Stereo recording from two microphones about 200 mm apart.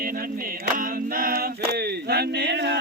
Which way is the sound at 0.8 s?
45° right (ahead or behind).